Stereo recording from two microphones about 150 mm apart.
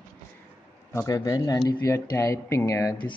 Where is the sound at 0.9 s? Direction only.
25° left (ahead or behind).